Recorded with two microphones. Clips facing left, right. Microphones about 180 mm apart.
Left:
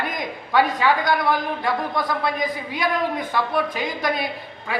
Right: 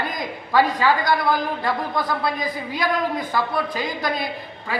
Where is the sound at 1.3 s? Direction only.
5° right (ahead or behind).